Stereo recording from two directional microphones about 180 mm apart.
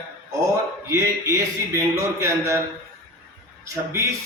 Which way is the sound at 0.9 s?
15° right (ahead or behind).